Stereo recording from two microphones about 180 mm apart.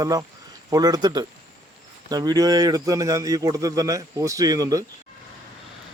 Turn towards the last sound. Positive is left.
turn(degrees=-20)  # may be behind; listen again after turning